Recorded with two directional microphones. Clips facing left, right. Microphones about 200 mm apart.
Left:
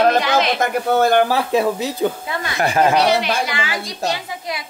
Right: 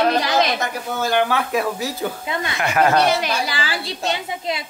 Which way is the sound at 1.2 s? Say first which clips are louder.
Left 4 dB; 30° left (ahead or behind).